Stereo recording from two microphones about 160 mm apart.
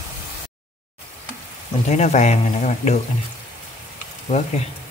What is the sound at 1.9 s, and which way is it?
A man's voice, 45° left (ahead or behind).